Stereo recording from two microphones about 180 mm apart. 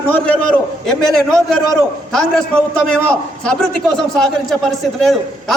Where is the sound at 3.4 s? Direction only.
5° left (ahead or behind).